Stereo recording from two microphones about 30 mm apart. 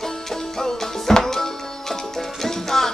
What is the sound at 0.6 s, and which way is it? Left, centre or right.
Music, centre.